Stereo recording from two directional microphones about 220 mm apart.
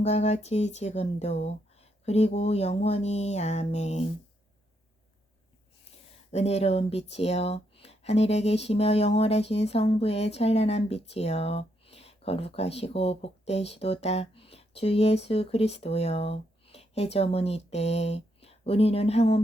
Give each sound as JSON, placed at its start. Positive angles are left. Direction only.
{"t": 0.0, "sound": "speech", "side_deg": 30}
{"t": 6.3, "sound": "speech", "side_deg": 30}